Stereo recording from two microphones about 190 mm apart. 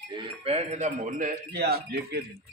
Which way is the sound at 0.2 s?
30° right (ahead or behind).